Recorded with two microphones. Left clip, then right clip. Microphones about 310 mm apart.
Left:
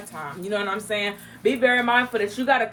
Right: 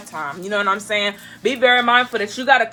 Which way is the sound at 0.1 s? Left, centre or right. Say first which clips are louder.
Right 5 dB; right.